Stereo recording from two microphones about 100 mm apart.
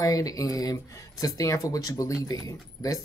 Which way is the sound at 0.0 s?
35° left (ahead or behind).